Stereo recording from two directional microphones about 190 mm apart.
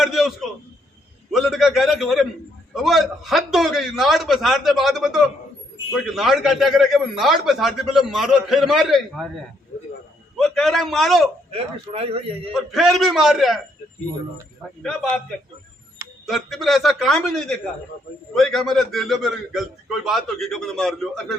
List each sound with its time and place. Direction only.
0.0 s a sound: centre (ahead or behind)
1.3 s a man's voice: centre (ahead or behind)
10.3 s a man's voice: centre (ahead or behind)
11.5 s speech: 30° right (ahead or behind)
12.5 s a man's voice: centre (ahead or behind)
14.8 s a man's voice: centre (ahead or behind)
16.2 s a man's voice: centre (ahead or behind)